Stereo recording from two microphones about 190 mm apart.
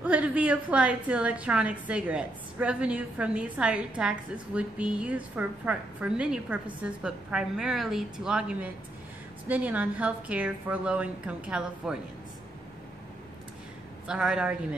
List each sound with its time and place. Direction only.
0.0 s a woman's voice: 5° right (ahead or behind)
14.0 s a woman's voice: 5° right (ahead or behind)